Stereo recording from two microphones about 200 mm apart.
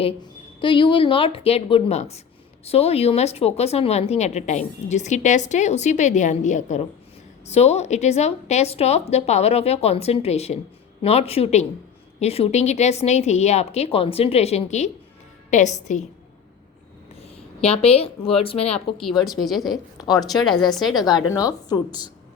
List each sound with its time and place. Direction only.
0.6 s a woman's voice: 25° left (ahead or behind)
17.2 s a woman's voice: 30° left (ahead or behind)
18.9 s a woman's voice: centre (ahead or behind)
20.0 s speech: 20° left (ahead or behind)
20.5 s a woman's voice: centre (ahead or behind)
21.0 s a woman's voice: 20° left (ahead or behind)